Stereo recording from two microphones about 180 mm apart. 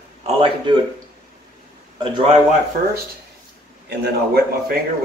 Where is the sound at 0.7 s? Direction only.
25° right (ahead or behind).